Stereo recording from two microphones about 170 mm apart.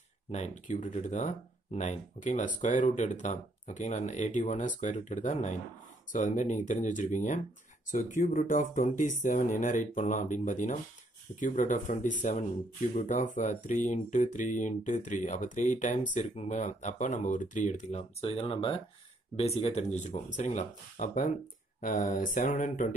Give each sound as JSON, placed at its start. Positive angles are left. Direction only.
{"t": 0.3, "sound": "speech", "side_deg": 45}